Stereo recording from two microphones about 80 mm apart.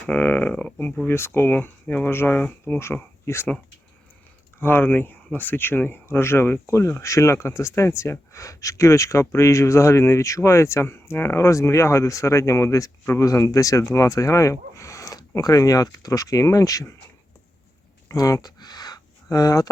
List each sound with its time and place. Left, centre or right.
0.0 s speech: centre
1.0 s speech: left
4.6 s speech: left
18.1 s a sound: left